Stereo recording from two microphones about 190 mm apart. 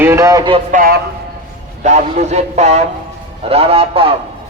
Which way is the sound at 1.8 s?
40° right (ahead or behind).